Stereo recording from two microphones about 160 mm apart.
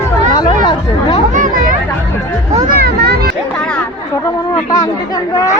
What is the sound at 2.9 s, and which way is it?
Speech, 90° right.